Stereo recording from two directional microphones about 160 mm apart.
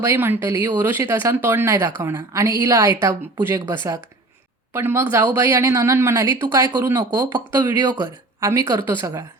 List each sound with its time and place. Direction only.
0.0 s speech: 15° right (ahead or behind)